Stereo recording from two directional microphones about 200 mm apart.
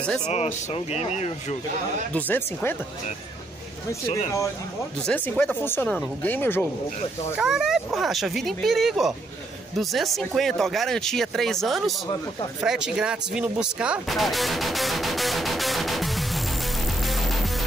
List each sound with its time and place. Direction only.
0.3 s speech: 30° left (ahead or behind)
2.1 s speech: 10° left (ahead or behind)
5.0 s speech: 10° left (ahead or behind)
7.3 s speech: 5° right (ahead or behind)
17.1 s music: centre (ahead or behind)